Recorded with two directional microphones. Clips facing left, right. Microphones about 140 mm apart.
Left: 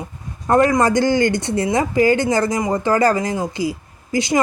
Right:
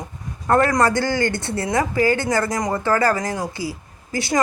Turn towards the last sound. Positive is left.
turn(degrees=20)  # may be behind; listen again after turning